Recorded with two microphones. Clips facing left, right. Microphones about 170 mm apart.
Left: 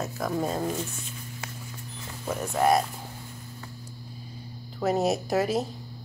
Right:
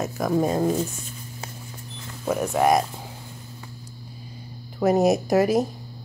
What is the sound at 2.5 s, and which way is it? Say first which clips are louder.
Speech: right 2 dB; 15° right (ahead or behind).